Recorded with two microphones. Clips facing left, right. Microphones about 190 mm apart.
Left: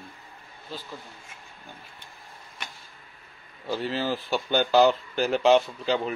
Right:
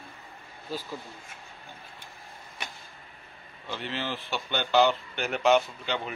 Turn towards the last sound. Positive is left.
turn(degrees=35)  # may be behind; listen again after turning